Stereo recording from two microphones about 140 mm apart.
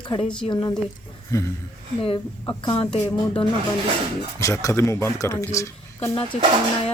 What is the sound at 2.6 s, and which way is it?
Speech, 40° left (ahead or behind).